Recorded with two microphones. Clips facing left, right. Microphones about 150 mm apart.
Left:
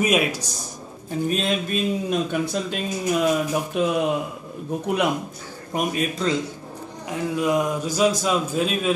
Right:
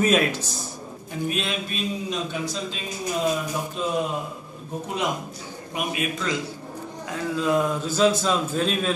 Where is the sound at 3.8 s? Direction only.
70° left (ahead or behind).